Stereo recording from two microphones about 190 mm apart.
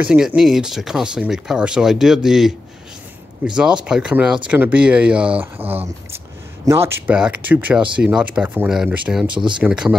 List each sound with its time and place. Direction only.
0.0 s speech: 5° right (ahead or behind)
9.3 s speech: 25° right (ahead or behind)
9.6 s speech: 5° right (ahead or behind)